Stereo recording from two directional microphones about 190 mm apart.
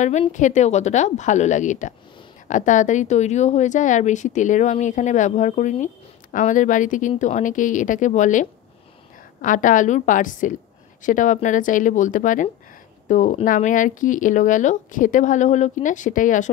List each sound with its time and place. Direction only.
0.0 s speech: 40° left (ahead or behind)